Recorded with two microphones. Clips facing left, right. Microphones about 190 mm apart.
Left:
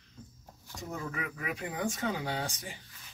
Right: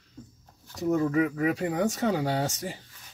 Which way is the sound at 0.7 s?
35° right (ahead or behind).